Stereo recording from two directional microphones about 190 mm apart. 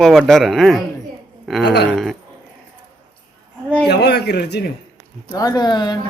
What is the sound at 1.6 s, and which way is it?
Speech, 60° left (ahead or behind).